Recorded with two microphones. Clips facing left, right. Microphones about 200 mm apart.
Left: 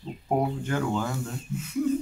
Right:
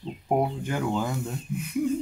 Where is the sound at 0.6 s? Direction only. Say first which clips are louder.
Even; 15° right (ahead or behind).